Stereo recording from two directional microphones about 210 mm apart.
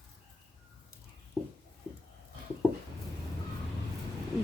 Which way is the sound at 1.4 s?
Centre (ahead or behind).